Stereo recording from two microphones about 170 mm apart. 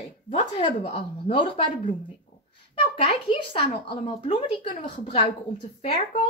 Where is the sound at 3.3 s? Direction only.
30° left (ahead or behind).